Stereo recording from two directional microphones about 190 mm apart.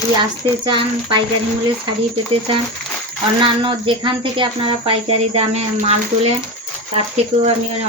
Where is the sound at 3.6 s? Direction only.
25° right (ahead or behind).